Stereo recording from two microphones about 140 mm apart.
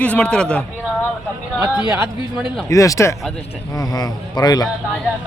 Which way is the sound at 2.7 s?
20° left (ahead or behind).